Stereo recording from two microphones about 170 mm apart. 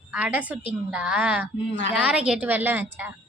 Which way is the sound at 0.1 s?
10° right (ahead or behind).